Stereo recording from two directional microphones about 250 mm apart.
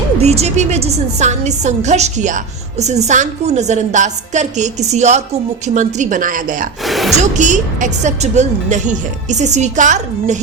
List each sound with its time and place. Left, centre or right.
0.2 s a woman's voice: right
6.8 s speech: centre
7.2 s a woman's voice: right